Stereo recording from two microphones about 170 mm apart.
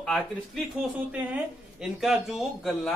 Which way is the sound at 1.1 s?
10° right (ahead or behind).